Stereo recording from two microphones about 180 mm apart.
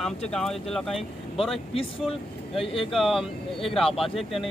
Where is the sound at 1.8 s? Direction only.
30° left (ahead or behind).